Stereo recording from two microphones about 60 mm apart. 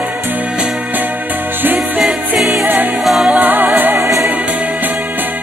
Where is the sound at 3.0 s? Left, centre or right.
Centre.